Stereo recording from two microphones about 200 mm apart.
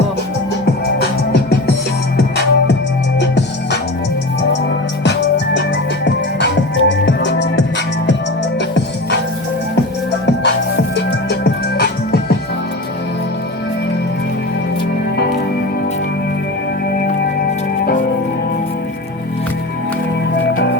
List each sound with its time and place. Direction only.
1.3 s music: 55° left (ahead or behind)
6.4 s music: 65° left (ahead or behind)
10.9 s music: 55° left (ahead or behind)